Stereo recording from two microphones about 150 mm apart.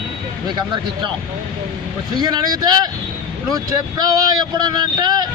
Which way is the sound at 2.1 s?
25° right (ahead or behind).